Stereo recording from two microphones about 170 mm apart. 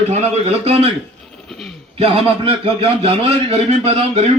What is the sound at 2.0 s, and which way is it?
A man's voice, 35° right (ahead or behind).